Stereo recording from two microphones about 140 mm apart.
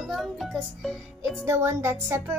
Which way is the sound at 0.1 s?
Centre (ahead or behind).